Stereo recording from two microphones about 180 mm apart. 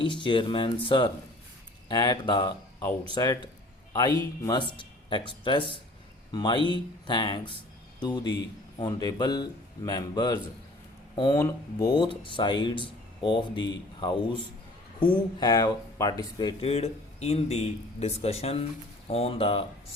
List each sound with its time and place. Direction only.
0.0 s a man's voice: 25° left (ahead or behind)